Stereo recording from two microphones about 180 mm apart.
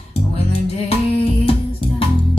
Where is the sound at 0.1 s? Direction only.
35° left (ahead or behind).